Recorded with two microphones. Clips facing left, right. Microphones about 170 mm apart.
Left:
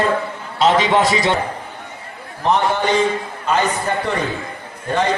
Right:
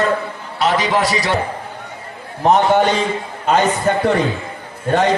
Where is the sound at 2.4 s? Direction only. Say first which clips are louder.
Right 5 dB; 60° right (ahead or behind).